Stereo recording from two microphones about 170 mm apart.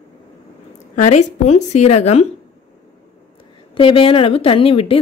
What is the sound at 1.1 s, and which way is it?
A woman's voice, 40° left (ahead or behind).